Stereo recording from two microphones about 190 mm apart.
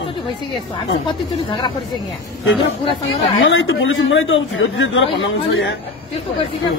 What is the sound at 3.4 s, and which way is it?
Speech, 90° left.